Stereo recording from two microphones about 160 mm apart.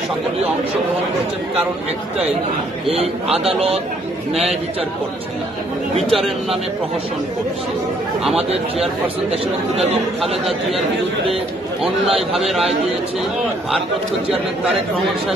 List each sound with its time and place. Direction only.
3.3 s speech: 40° right (ahead or behind)
8.7 s a man's voice: centre (ahead or behind)
11.8 s a man's voice: centre (ahead or behind)